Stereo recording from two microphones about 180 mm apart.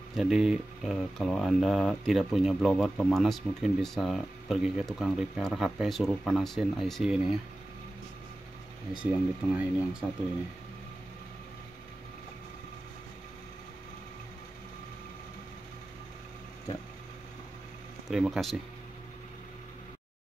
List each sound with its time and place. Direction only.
0.1 s speech: centre (ahead or behind)
9.0 s speech: 5° right (ahead or behind)
18.0 s speech: centre (ahead or behind)